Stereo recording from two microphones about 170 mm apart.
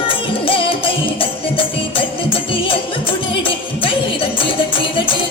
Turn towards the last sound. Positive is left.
turn(degrees=30)  # may be behind; listen again after turning